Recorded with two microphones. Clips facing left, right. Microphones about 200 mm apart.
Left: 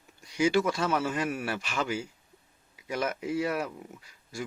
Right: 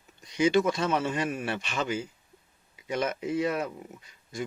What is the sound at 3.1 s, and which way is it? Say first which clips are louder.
Speech: right 1 dB; 5° left (ahead or behind).